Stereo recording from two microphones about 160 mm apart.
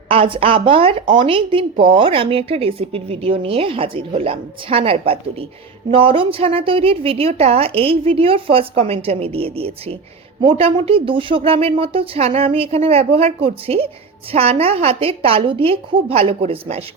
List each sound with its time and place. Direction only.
0.1 s a woman's voice: 35° right (ahead or behind)